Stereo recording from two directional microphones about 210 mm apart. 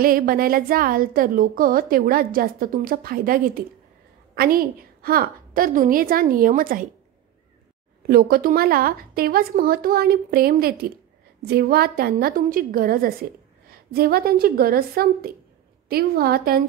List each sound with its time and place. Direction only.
0.0 s a woman's voice: 45° right (ahead or behind)
8.1 s a woman's voice: 45° right (ahead or behind)